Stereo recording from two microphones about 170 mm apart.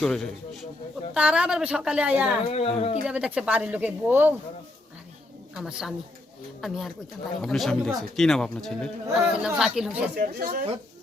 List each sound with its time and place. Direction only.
0.0 s a woman's voice: centre (ahead or behind)
2.5 s speech: 35° left (ahead or behind)
3.1 s speech: 5° right (ahead or behind)
5.5 s a woman's voice: 5° right (ahead or behind)
10.2 s speech: 55° right (ahead or behind)